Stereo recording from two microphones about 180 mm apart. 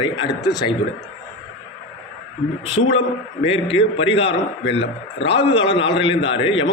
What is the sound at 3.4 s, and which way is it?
A man's voice, 30° left (ahead or behind).